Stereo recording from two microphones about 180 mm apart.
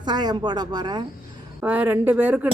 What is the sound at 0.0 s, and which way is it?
Speech, 25° right (ahead or behind).